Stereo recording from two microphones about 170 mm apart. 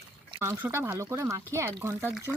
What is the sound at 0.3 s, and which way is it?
Speech, 15° right (ahead or behind).